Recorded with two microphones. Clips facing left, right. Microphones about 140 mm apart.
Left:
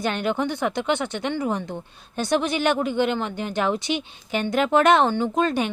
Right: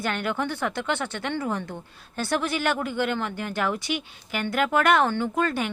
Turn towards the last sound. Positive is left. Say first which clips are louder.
# left 3 dB
turn(degrees=20)  # may be behind; listen again after turning